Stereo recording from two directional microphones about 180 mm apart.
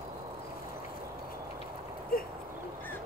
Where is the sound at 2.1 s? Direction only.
55° left (ahead or behind).